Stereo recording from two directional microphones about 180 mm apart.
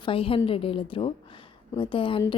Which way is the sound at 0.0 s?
30° left (ahead or behind).